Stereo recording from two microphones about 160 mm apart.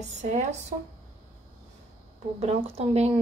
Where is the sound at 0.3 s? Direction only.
45° right (ahead or behind).